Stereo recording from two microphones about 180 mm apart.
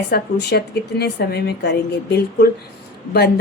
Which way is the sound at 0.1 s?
65° left (ahead or behind).